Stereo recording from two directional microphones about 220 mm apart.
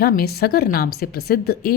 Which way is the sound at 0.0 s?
45° left (ahead or behind).